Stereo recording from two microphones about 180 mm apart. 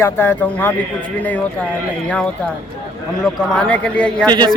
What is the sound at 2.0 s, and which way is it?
Speech, 5° left (ahead or behind).